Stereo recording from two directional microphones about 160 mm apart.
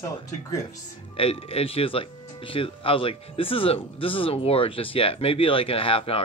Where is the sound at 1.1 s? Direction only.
35° left (ahead or behind).